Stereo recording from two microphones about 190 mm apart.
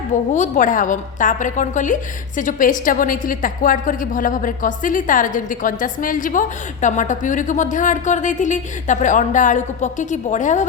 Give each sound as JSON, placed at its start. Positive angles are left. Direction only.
{"t": 0.3, "sound": "a woman's voice", "side_deg": 40}